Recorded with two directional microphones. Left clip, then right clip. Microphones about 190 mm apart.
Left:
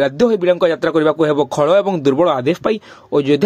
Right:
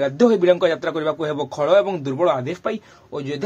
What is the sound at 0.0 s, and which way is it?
A man's voice, 40° left (ahead or behind).